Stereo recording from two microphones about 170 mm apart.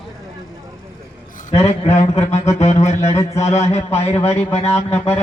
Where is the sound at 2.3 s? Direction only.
40° left (ahead or behind).